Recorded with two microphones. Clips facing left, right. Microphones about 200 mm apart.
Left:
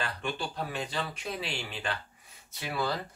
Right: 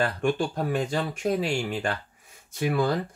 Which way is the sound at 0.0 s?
50° right (ahead or behind).